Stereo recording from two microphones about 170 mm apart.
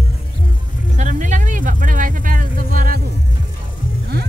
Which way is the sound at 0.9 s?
45° right (ahead or behind).